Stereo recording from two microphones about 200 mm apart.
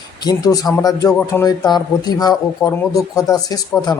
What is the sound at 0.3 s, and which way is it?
Speech, 20° left (ahead or behind).